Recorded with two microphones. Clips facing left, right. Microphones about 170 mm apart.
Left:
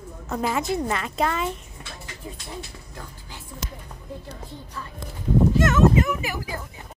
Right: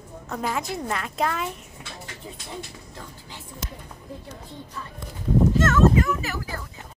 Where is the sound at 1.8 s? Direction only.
5° right (ahead or behind).